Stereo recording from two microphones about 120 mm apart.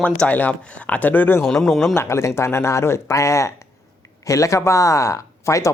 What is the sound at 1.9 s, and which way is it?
Speech, 25° left (ahead or behind).